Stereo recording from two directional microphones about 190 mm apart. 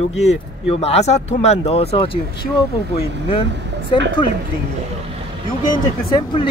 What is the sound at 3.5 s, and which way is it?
Speech, 70° right (ahead or behind).